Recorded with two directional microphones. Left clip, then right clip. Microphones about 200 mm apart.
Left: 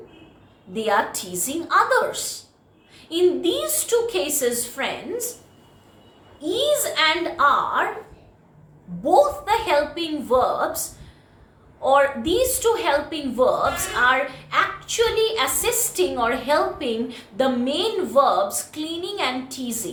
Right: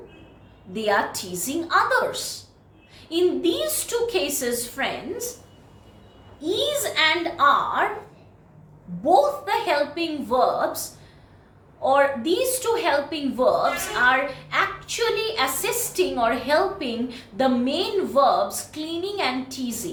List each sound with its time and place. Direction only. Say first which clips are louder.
0.7 s a woman's voice: left 1 dB; 15° left (ahead or behind)
6.4 s a woman's voice: left 3 dB; 15° left (ahead or behind)
9.0 s a woman's voice: left 1 dB; 15° left (ahead or behind)
11.8 s a woman's voice: left 1 dB; 15° left (ahead or behind)